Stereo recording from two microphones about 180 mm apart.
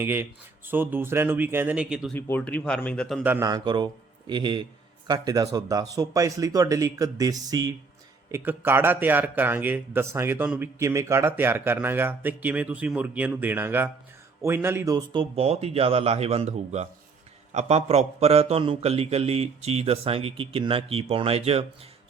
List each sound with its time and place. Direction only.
0.0 s a man's voice: 10° right (ahead or behind)
2.1 s speech: 10° left (ahead or behind)
3.2 s a man's voice: 10° right (ahead or behind)
3.5 s a man's voice: 25° right (ahead or behind)